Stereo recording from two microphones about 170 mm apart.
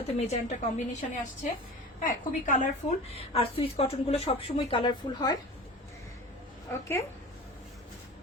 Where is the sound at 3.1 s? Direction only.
35° left (ahead or behind).